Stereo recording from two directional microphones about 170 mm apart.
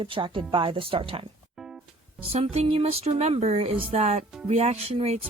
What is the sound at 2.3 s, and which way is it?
Speech, 35° right (ahead or behind).